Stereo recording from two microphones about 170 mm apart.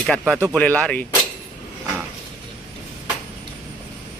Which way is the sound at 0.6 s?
10° left (ahead or behind).